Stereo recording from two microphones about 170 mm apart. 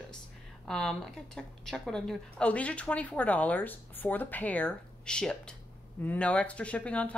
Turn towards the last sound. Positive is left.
turn(degrees=10)  # may be behind; listen again after turning